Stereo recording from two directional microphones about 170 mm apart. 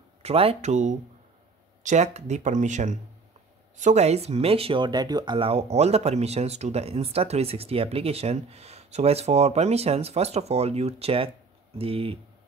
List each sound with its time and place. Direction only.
0.2 s speech: 35° right (ahead or behind)